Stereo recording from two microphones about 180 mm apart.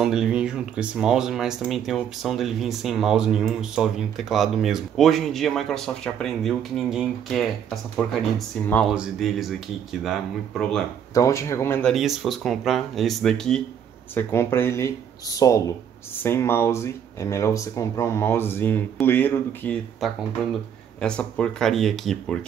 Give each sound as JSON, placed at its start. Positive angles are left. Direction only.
{"t": 0.0, "sound": "speech", "side_deg": -5}
{"t": 10.6, "sound": "speech", "side_deg": 5}
{"t": 11.1, "sound": "speech", "side_deg": 15}
{"t": 11.9, "sound": "speech", "side_deg": 0}
{"t": 20.0, "sound": "speech", "side_deg": 0}